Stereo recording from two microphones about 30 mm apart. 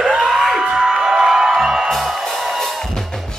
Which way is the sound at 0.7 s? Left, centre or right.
Right.